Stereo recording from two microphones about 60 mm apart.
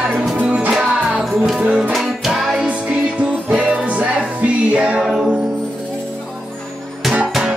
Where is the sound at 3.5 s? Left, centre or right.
Right.